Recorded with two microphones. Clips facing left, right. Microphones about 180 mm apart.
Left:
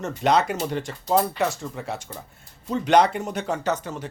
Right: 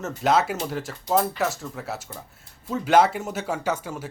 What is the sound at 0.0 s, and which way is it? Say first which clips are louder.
A man's voice: left 1 dB; centre (ahead or behind).